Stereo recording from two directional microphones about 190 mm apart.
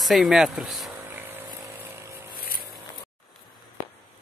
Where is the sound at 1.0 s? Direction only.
10° right (ahead or behind).